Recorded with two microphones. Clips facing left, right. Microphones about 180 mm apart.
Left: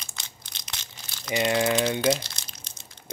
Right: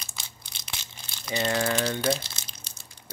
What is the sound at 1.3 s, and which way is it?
Speech, 15° left (ahead or behind).